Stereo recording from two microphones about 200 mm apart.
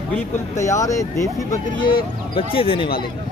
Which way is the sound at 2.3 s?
25° left (ahead or behind).